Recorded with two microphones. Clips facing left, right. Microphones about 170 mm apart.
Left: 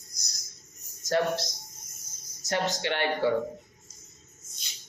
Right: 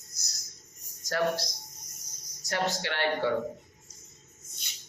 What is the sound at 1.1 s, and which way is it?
Speech, 25° left (ahead or behind).